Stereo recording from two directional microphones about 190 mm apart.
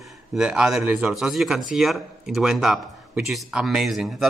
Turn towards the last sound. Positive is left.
turn(degrees=0)  # may be behind; listen again after turning